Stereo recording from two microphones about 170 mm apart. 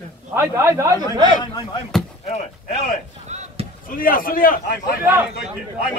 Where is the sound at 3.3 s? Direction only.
40° right (ahead or behind).